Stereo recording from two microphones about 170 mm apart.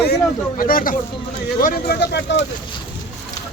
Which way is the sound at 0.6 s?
55° left (ahead or behind).